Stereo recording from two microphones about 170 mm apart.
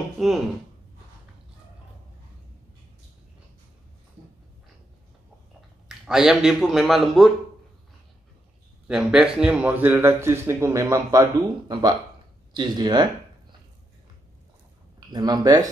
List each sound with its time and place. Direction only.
5.9 s speech: 5° right (ahead or behind)
8.8 s a man's voice: 5° right (ahead or behind); by 13.6 s 25° right (ahead or behind)
15.1 s speech: 20° right (ahead or behind)